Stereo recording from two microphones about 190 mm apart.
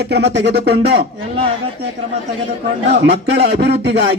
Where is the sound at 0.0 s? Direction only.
60° right (ahead or behind).